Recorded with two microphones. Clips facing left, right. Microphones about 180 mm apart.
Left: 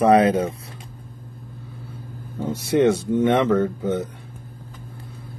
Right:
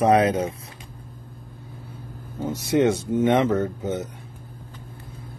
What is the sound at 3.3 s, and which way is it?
Speech, 60° left (ahead or behind).